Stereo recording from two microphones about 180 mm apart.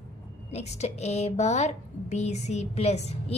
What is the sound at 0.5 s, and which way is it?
A woman's voice, 40° left (ahead or behind).